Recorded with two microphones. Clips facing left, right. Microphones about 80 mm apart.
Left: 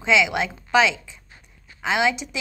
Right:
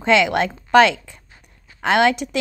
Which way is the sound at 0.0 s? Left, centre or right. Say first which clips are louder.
Right 4 dB; right.